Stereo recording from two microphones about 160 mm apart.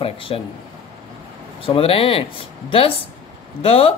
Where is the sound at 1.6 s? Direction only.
35° left (ahead or behind).